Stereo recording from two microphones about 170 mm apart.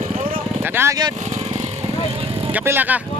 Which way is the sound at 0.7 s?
15° right (ahead or behind).